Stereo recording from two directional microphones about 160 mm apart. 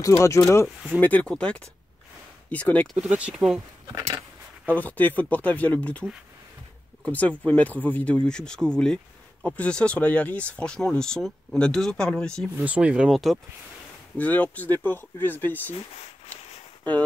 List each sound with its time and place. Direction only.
0.0 s speech: 20° left (ahead or behind)
3.1 s speech: 10° right (ahead or behind)
4.6 s speech: 10° left (ahead or behind)
7.1 s speech: 10° left (ahead or behind)
12.5 s speech: 10° right (ahead or behind); by 15.7 s 10° left (ahead or behind)